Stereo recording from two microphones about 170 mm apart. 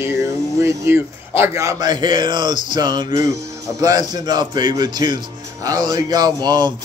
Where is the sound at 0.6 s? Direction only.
15° right (ahead or behind).